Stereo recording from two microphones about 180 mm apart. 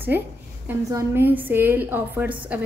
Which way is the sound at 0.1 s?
10° right (ahead or behind).